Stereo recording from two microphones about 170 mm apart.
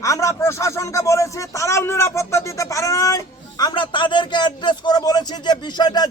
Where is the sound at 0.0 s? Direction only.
20° left (ahead or behind).